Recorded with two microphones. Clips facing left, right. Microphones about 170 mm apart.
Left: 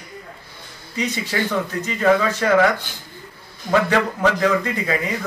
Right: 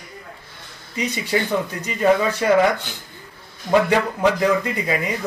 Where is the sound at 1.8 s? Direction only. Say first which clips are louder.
Even; 15° right (ahead or behind).